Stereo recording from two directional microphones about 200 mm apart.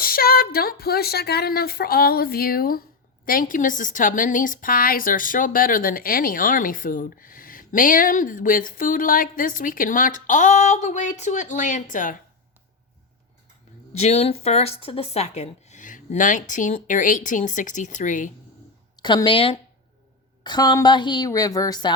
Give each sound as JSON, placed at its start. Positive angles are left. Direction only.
{"t": 0.0, "sound": "a woman's voice", "side_deg": 50}
{"t": 13.9, "sound": "speech", "side_deg": 35}
{"t": 18.9, "sound": "a woman's voice", "side_deg": 20}